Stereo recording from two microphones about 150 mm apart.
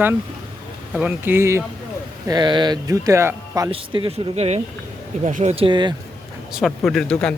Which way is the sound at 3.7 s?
35° right (ahead or behind).